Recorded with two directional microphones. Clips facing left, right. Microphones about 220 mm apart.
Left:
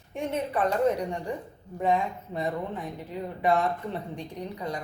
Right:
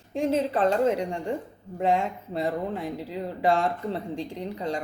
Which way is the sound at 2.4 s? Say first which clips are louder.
Right 3 dB; 30° right (ahead or behind).